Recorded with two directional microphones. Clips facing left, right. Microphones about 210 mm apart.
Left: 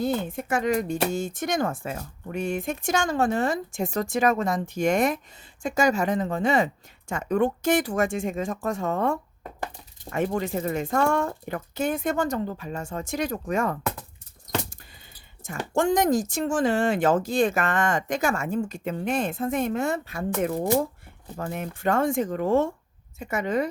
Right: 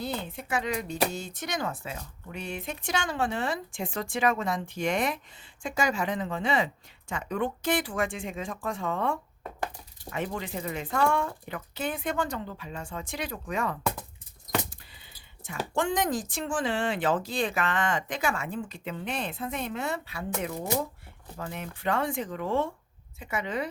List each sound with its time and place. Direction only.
0.0 s speech: 50° left (ahead or behind)
15.4 s speech: 45° left (ahead or behind)